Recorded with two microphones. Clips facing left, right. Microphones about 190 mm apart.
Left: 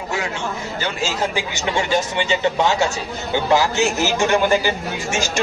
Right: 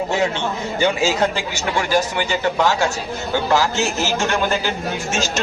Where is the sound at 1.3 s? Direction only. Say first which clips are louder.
Even; 20° left (ahead or behind).